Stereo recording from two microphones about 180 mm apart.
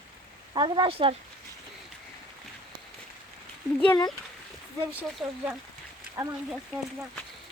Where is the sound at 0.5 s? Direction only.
25° right (ahead or behind).